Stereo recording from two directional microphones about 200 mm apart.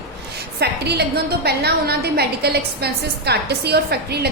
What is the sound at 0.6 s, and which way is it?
A woman's voice, 55° right (ahead or behind).